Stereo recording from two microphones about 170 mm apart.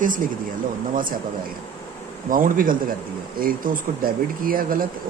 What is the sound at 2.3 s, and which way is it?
Speech, 55° right (ahead or behind).